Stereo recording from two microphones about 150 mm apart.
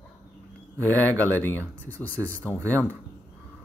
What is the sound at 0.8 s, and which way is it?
Speech, 10° left (ahead or behind).